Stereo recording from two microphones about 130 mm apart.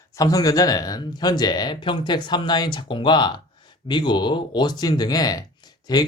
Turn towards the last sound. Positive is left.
turn(degrees=30)  # may be behind; listen again after turning